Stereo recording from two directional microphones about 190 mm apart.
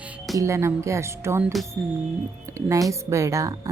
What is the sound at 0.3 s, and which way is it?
A woman's voice, 15° right (ahead or behind).